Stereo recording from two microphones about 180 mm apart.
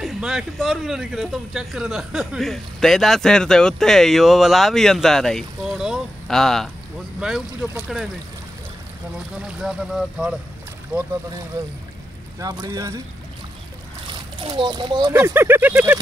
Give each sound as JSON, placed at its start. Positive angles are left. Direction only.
{"t": 0.0, "sound": "speech", "side_deg": -5}
{"t": 9.6, "sound": "speech", "side_deg": 0}
{"t": 14.0, "sound": "a child's voice", "side_deg": -25}
{"t": 15.1, "sound": "speech", "side_deg": -10}